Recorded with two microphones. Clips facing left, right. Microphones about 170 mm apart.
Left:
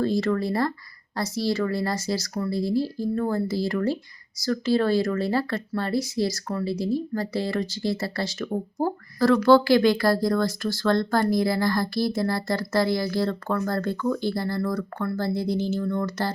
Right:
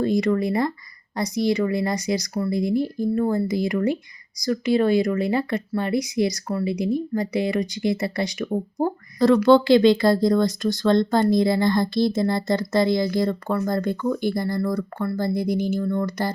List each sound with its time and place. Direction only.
0.0 s speech: 15° right (ahead or behind)